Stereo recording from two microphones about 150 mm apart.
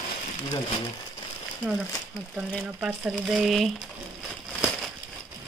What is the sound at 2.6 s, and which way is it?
Speech, 5° right (ahead or behind).